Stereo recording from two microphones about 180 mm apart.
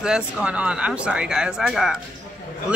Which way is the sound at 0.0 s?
5° right (ahead or behind).